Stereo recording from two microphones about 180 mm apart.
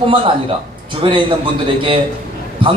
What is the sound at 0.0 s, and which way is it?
A man's voice, 30° right (ahead or behind).